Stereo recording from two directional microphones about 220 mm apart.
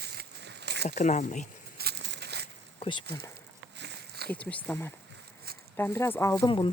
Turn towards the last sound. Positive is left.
turn(degrees=20)  # may be behind; listen again after turning